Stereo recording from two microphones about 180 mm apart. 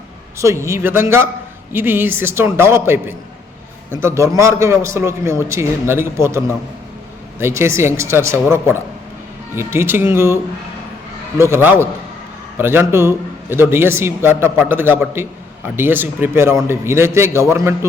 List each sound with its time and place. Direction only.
0.3 s a man's voice: 15° right (ahead or behind)
11.5 s a man's voice: 10° right (ahead or behind)